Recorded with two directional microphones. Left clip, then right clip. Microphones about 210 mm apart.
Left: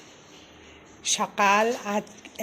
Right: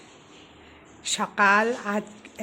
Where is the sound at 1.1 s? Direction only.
20° right (ahead or behind).